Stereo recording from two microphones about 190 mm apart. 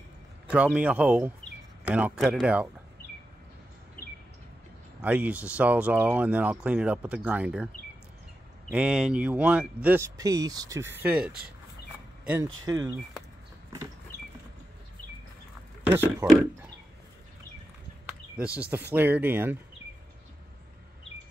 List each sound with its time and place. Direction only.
0.7 s speech: 5° right (ahead or behind)
5.0 s speech: 10° right (ahead or behind)
8.7 s speech: 5° right (ahead or behind)
12.6 s speech: 20° right (ahead or behind)
15.8 s speech: 10° right (ahead or behind)
18.4 s speech: 5° right (ahead or behind)